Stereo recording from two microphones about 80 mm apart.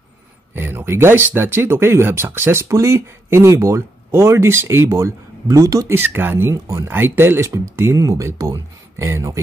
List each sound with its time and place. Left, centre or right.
0.6 s speech: right
2.6 s speech: right
5.9 s speech: right